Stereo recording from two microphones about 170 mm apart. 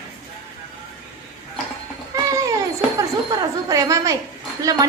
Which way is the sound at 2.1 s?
20° right (ahead or behind).